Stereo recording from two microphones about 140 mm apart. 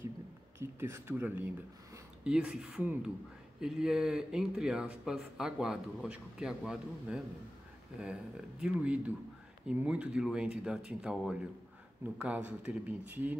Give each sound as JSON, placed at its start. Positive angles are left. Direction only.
{"t": 0.6, "sound": "speech", "side_deg": -20}